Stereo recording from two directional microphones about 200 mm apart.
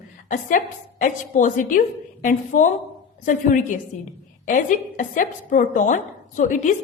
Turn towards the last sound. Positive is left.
turn(degrees=40)  # may be behind; listen again after turning